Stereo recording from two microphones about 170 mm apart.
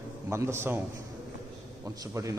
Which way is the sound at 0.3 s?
15° right (ahead or behind).